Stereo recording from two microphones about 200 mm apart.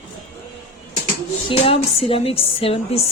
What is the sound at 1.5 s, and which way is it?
A woman's voice, 30° left (ahead or behind).